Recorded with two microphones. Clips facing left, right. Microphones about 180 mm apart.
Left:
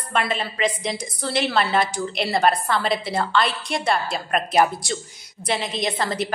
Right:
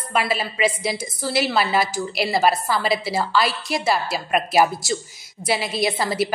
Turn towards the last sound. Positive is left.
turn(degrees=-10)  # may be behind; listen again after turning